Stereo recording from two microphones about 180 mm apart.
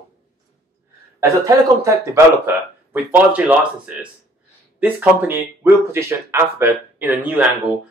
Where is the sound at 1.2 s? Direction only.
15° right (ahead or behind).